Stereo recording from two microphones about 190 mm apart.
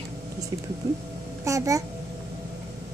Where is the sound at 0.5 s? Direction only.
20° right (ahead or behind).